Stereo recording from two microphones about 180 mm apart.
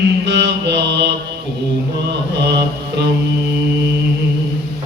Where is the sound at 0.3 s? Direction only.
75° right (ahead or behind).